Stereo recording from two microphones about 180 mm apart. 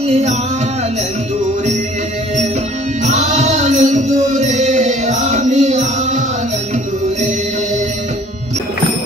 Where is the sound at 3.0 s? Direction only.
40° right (ahead or behind).